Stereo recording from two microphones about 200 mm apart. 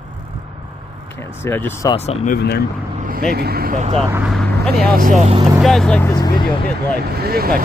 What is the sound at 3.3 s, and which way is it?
Speech, 50° right (ahead or behind).